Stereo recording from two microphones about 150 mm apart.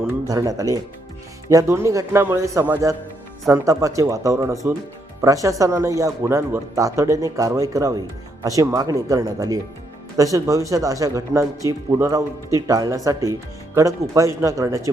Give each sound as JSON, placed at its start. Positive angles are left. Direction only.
{"t": 0.3, "sound": "speech", "side_deg": -25}